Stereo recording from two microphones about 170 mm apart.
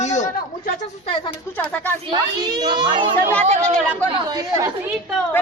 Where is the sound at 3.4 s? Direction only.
40° right (ahead or behind).